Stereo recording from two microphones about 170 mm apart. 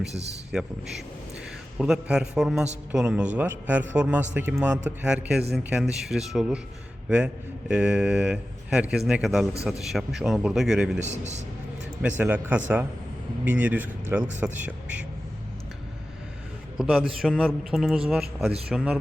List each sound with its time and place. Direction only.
0.1 s a man's voice: 40° right (ahead or behind)
1.8 s speech: 5° right (ahead or behind)
7.7 s speech: 5° right (ahead or behind)
11.0 s a man's voice: 45° right (ahead or behind)
12.0 s speech: 10° right (ahead or behind)
16.7 s speech: 5° right (ahead or behind)